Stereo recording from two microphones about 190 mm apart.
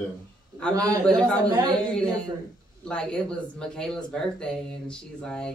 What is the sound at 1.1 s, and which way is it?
Speech, 5° left (ahead or behind).